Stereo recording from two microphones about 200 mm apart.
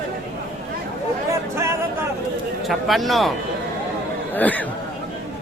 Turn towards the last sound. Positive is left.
turn(degrees=10)  # may be behind; listen again after turning